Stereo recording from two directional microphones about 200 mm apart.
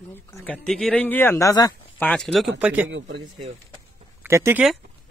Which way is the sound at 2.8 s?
70° right (ahead or behind).